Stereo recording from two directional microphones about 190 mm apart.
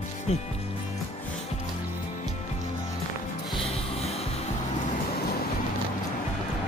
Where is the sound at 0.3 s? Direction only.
35° left (ahead or behind).